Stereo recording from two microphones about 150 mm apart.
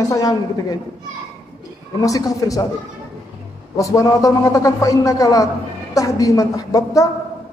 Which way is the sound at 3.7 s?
20° left (ahead or behind).